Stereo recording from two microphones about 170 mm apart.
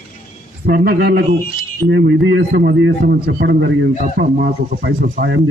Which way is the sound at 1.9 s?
85° right.